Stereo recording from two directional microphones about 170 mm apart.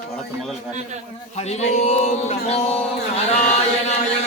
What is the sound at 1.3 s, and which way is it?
Mantra, 40° left (ahead or behind).